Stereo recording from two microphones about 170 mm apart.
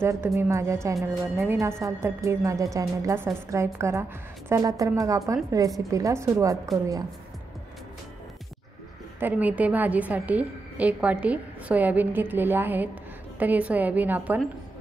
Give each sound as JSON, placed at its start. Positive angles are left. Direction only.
{"t": 0.0, "sound": "a woman's voice", "side_deg": -15}
{"t": 9.2, "sound": "a woman's voice", "side_deg": -10}